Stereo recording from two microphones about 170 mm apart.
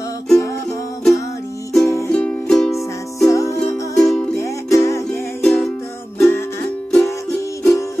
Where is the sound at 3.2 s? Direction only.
20° left (ahead or behind).